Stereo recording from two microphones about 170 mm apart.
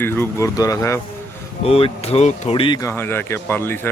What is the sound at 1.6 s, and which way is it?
Speech, 35° left (ahead or behind).